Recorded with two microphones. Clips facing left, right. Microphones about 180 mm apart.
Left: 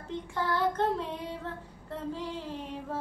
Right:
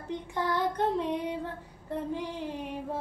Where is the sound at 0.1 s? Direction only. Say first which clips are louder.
Right 1 dB; 20° right (ahead or behind).